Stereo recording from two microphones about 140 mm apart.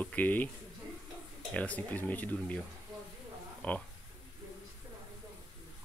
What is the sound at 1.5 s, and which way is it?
Speech, 10° left (ahead or behind).